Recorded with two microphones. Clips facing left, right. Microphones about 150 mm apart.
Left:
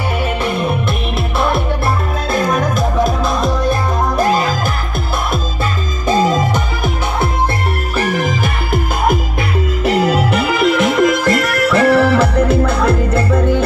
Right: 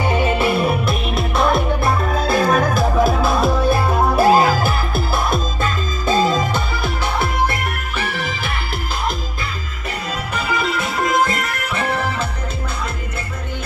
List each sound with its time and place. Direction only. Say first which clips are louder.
0.2 s music: even; 10° right (ahead or behind)
6.0 s music: left 3 dB; 15° left (ahead or behind)
8.0 s music: left 9 dB; 40° left (ahead or behind)
9.8 s music: left 12 dB; 85° left